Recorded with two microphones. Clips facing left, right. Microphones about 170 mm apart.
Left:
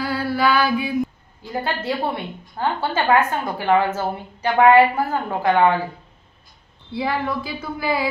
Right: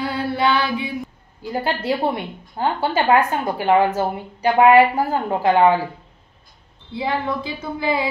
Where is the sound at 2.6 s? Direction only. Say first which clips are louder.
Right 2 dB; 15° right (ahead or behind).